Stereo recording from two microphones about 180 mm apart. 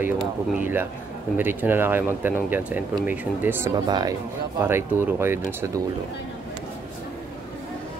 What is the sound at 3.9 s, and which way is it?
Speech, 25° right (ahead or behind).